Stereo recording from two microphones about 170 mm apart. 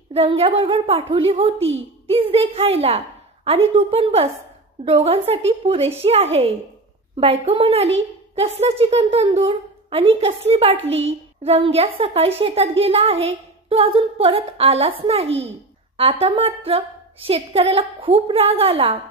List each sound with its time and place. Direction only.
0.1 s a woman's voice: 35° right (ahead or behind)
10.8 s a child's voice: 90° right
11.4 s a woman's voice: 35° right (ahead or behind)